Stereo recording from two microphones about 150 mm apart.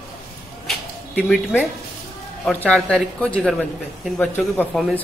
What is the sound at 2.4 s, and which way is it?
Speech, 5° left (ahead or behind).